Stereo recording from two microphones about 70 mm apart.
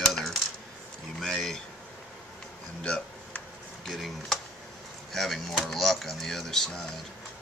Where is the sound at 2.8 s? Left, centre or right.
Centre.